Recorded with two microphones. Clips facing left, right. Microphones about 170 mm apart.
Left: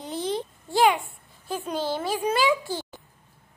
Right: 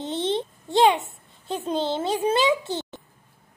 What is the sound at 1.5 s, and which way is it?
A child's voice, 25° right (ahead or behind).